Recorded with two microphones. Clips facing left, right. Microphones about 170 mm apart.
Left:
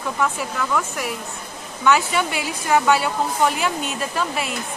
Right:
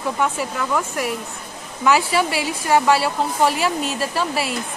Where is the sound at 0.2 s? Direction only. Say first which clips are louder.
Left 1 dB; centre (ahead or behind).